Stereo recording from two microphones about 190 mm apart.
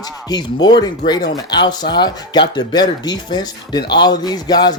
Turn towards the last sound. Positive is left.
turn(degrees=20)  # may be behind; listen again after turning